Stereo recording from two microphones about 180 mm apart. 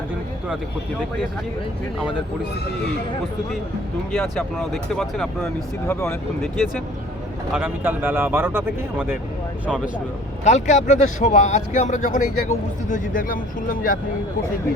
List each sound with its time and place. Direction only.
4.1 s speech: centre (ahead or behind)
5.9 s speech: 15° left (ahead or behind)
7.5 s speech: 10° right (ahead or behind)
10.4 s speech: 40° left (ahead or behind)